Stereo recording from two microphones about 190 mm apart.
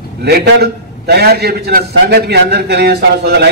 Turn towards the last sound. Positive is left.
turn(degrees=-60)  # may be behind; listen again after turning